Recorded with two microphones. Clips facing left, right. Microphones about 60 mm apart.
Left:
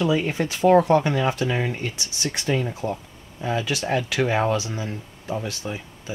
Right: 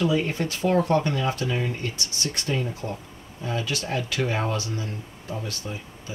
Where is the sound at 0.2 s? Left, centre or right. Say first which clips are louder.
Left 4 dB; centre.